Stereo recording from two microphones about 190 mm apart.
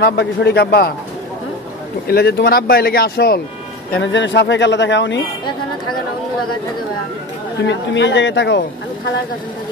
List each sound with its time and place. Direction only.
0.0 s a man's voice: 60° left (ahead or behind)
2.0 s speech: 55° left (ahead or behind)
4.0 s speech: 70° left (ahead or behind)
7.6 s speech: 65° left (ahead or behind)